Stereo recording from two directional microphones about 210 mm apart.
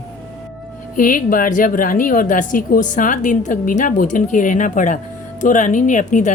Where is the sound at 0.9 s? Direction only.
40° left (ahead or behind).